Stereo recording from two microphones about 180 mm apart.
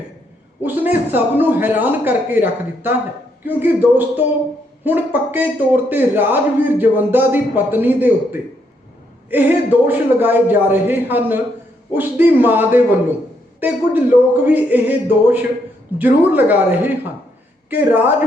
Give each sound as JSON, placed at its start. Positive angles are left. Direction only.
{"t": 0.6, "sound": "a man's voice", "side_deg": -10}